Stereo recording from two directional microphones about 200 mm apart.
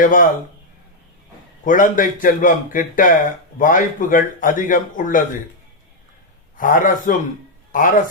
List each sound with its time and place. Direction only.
0.0 s a man's voice: 40° left (ahead or behind)
1.6 s a man's voice: 40° left (ahead or behind)
6.6 s a man's voice: 40° left (ahead or behind)